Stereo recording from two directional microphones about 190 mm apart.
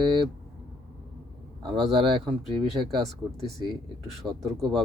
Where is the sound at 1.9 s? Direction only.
25° right (ahead or behind).